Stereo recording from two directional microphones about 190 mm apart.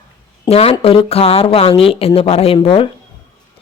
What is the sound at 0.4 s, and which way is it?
A woman's voice, 30° left (ahead or behind).